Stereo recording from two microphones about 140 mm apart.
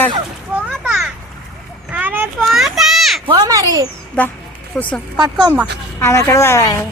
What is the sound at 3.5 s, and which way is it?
Speech, 25° right (ahead or behind).